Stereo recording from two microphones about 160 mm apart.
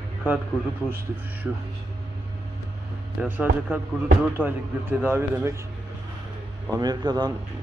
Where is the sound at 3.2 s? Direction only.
10° right (ahead or behind).